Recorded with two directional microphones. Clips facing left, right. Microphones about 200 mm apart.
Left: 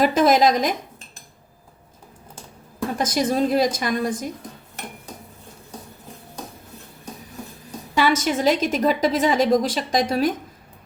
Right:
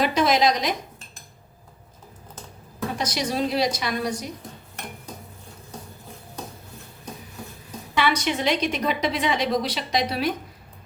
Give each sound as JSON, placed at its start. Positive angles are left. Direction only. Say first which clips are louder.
{"t": 0.0, "sound": "a woman's voice", "louder": "left 4 dB", "side_deg": 50}
{"t": 3.0, "sound": "a woman's voice", "louder": "left 5 dB", "side_deg": 50}
{"t": 7.9, "sound": "a woman's voice", "louder": "left 3 dB", "side_deg": 40}